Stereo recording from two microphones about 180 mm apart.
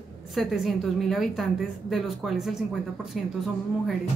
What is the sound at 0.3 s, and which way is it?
A woman's voice, centre (ahead or behind).